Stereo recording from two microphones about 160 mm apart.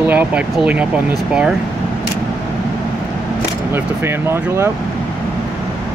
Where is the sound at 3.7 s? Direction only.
15° right (ahead or behind).